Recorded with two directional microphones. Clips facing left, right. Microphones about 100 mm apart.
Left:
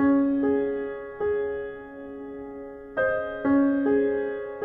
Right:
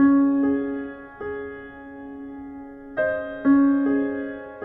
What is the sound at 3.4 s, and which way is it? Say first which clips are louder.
Music: right 4 dB; 35° right (ahead or behind).